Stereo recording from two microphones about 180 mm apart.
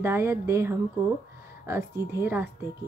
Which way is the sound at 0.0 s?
15° right (ahead or behind).